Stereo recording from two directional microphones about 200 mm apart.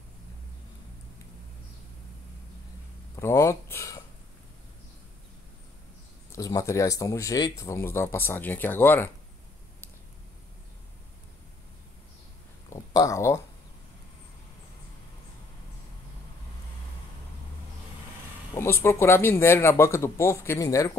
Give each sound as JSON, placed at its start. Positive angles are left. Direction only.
{"t": 3.2, "sound": "speech", "side_deg": 15}
{"t": 6.3, "sound": "speech", "side_deg": 15}
{"t": 12.6, "sound": "a sound", "side_deg": 15}
{"t": 18.6, "sound": "speech", "side_deg": 10}